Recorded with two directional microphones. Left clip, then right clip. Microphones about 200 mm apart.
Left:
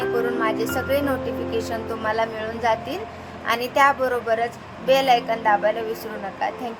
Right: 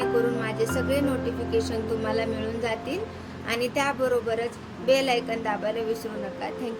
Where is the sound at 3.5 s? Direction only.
15° right (ahead or behind).